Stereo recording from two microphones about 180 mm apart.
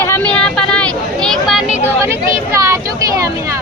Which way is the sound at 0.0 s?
10° left (ahead or behind).